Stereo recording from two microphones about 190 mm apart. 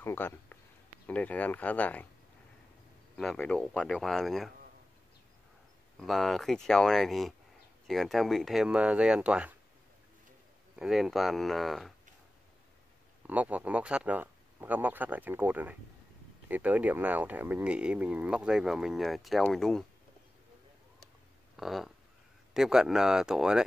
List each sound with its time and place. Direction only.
0.0 s speech: 10° left (ahead or behind)
3.2 s speech: 5° left (ahead or behind)
5.9 s speech: centre (ahead or behind)
10.8 s speech: centre (ahead or behind)
13.3 s speech: 5° right (ahead or behind)
21.5 s speech: centre (ahead or behind)